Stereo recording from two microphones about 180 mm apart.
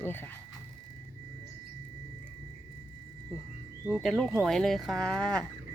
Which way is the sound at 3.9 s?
Centre (ahead or behind).